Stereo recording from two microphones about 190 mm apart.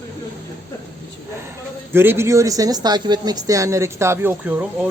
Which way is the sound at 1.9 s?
10° right (ahead or behind).